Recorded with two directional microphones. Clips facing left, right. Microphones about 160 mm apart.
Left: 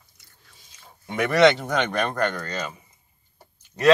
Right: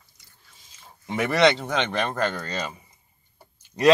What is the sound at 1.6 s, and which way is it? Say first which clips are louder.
Speech: left 1 dB; centre (ahead or behind).